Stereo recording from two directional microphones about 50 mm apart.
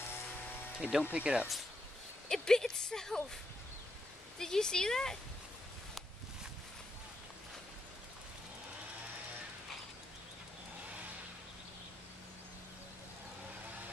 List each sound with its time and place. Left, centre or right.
0.7 s speech: centre
1.1 s speech: right
2.2 s speech: centre
4.4 s speech: centre